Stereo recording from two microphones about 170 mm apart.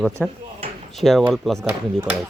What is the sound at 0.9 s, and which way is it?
Speech, centre (ahead or behind).